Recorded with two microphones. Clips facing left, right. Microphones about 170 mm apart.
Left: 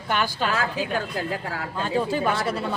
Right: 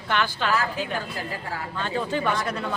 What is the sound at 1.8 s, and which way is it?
Speech, 10° left (ahead or behind).